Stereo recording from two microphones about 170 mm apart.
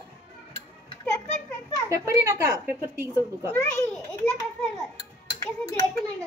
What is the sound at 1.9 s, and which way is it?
Speech, 20° right (ahead or behind).